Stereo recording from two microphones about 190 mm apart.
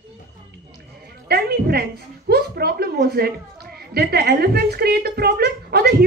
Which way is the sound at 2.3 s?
55° right (ahead or behind).